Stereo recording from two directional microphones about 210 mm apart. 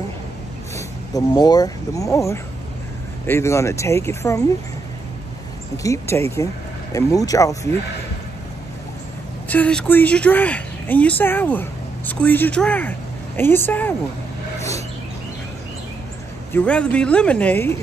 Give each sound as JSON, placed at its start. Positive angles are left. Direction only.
{"t": 0.7, "sound": "a woman's voice", "side_deg": 15}
{"t": 5.8, "sound": "a woman's voice", "side_deg": 15}
{"t": 9.5, "sound": "a woman's voice", "side_deg": 5}
{"t": 16.5, "sound": "speech", "side_deg": 5}